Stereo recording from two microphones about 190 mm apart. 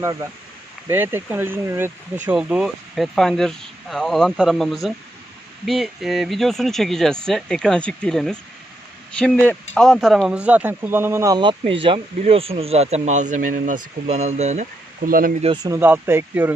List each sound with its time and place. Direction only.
0.0 s speech: 15° right (ahead or behind); by 15.4 s 50° right (ahead or behind)
15.4 s speech: 15° right (ahead or behind)